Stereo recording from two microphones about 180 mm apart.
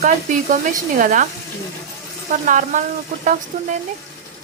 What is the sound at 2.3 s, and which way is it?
Speech, 45° right (ahead or behind).